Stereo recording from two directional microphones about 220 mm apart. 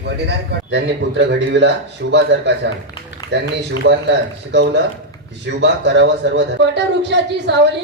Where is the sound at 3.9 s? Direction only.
50° right (ahead or behind).